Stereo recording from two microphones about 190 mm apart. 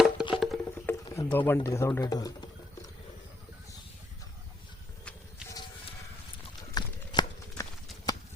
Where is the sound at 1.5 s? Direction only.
15° left (ahead or behind).